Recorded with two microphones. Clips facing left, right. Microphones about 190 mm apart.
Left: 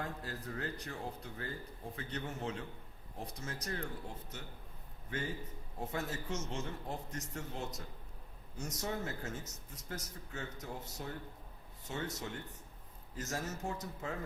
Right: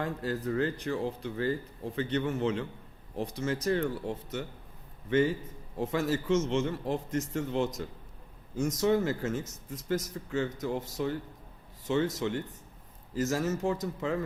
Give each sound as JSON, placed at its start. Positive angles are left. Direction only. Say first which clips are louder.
{"t": 0.0, "sound": "speech", "louder": "right 10 dB", "side_deg": -90}
{"t": 5.8, "sound": "speech", "louder": "right 10 dB", "side_deg": -90}